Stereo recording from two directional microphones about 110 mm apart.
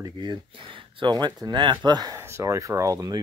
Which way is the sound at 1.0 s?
40° right (ahead or behind).